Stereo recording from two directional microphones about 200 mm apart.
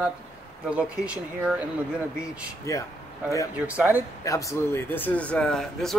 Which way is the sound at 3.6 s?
10° right (ahead or behind).